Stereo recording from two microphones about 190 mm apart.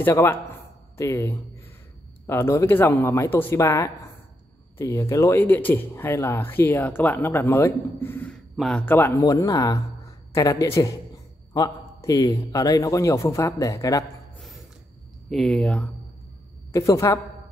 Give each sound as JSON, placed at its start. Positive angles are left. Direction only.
{"t": 0.0, "sound": "speech", "side_deg": 10}
{"t": 15.2, "sound": "speech", "side_deg": 0}
{"t": 16.7, "sound": "speech", "side_deg": 15}